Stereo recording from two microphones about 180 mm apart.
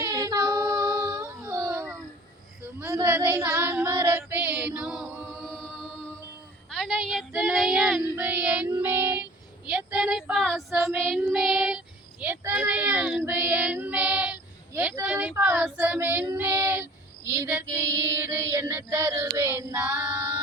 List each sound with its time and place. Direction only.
0.0 s child singing: 15° right (ahead or behind)
1.7 s a sound: 15° right (ahead or behind)
2.8 s female singing: 15° right (ahead or behind); by 5.7 s 5° left (ahead or behind)
6.7 s a sound: 5° left (ahead or behind)
7.3 s child singing: 5° right (ahead or behind)
15.0 s female singing: 5° right (ahead or behind)
20.1 s music: 20° right (ahead or behind)